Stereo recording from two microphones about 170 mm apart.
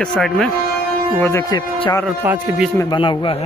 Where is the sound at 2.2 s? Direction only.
10° right (ahead or behind).